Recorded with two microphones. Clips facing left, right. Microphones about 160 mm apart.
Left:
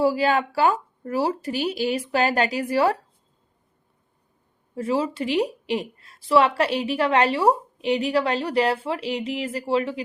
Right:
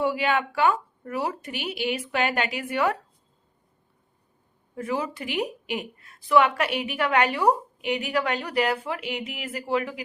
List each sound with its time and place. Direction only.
0.0 s a woman's voice: 35° left (ahead or behind)
4.7 s a woman's voice: 25° left (ahead or behind)